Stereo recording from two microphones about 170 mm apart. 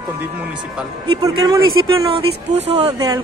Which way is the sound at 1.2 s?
20° right (ahead or behind).